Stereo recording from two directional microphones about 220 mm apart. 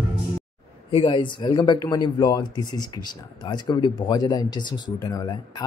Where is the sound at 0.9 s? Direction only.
20° left (ahead or behind).